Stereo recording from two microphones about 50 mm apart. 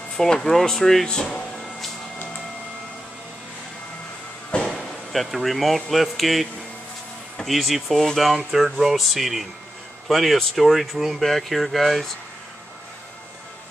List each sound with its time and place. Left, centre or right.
0.2 s speech: centre
4.6 s speech: centre
7.4 s speech: centre